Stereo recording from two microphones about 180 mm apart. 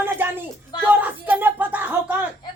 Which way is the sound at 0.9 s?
10° right (ahead or behind).